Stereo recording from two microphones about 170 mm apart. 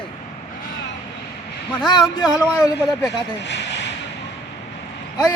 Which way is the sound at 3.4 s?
90° left.